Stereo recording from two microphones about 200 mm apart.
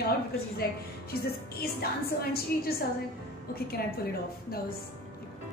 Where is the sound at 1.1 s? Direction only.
50° left (ahead or behind).